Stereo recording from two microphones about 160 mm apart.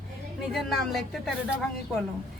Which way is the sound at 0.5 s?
Centre (ahead or behind).